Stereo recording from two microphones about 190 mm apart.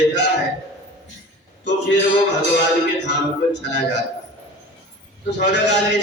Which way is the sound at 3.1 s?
65° left (ahead or behind).